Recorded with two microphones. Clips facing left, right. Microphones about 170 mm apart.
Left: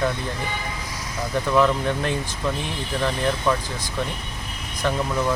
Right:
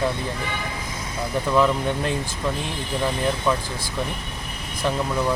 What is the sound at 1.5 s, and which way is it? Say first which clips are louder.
Speech: even; 5° right (ahead or behind).